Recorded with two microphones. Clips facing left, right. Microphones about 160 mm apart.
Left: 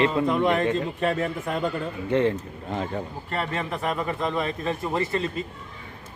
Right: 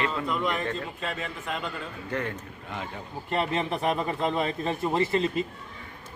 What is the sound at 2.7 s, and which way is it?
Speech, 40° left (ahead or behind).